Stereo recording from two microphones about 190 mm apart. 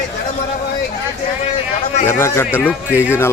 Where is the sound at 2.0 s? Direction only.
15° left (ahead or behind).